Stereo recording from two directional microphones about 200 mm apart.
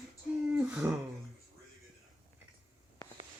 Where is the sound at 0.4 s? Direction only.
5° right (ahead or behind).